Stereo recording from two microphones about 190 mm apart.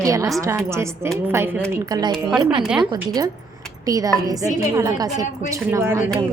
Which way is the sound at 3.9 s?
20° right (ahead or behind).